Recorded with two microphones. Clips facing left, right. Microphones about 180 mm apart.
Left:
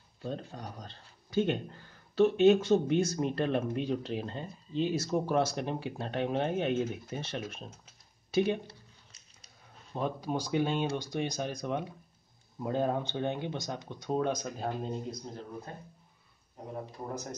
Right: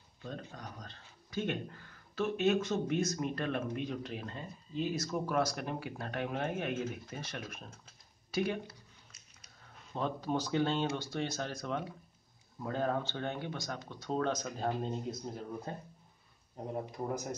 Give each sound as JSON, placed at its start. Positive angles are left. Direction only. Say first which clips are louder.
{"t": 0.6, "sound": "speech", "louder": "left 4 dB", "side_deg": 30}
{"t": 8.3, "sound": "a sound", "louder": "left 5 dB", "side_deg": 20}
{"t": 9.9, "sound": "speech", "louder": "left 1 dB", "side_deg": 10}
{"t": 17.0, "sound": "speech", "louder": "right 2 dB", "side_deg": -10}